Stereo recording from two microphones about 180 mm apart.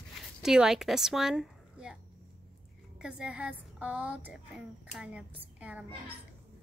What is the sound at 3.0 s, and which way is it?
A woman's voice, 5° right (ahead or behind).